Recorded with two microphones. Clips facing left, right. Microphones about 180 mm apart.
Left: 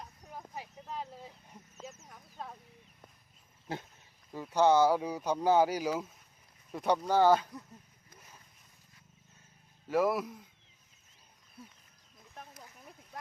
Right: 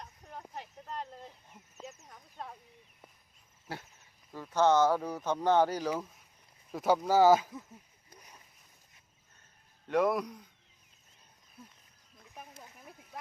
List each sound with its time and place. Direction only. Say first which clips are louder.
0.0 s vehicle: even; 5° left (ahead or behind)
0.5 s a sound: even; 5° left (ahead or behind)
3.7 s speech: left 3 dB; 20° left (ahead or behind)
6.7 s speech: right 2 dB; centre (ahead or behind)
9.9 s speech: right 1 dB; 5° left (ahead or behind)